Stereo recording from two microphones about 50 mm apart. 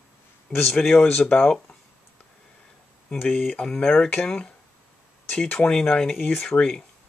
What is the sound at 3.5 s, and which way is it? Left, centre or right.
Speech, centre.